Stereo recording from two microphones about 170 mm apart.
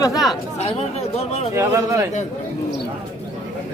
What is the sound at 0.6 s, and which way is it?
Speech, 40° left (ahead or behind).